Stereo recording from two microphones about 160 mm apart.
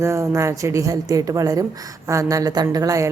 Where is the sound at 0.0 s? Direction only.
20° right (ahead or behind).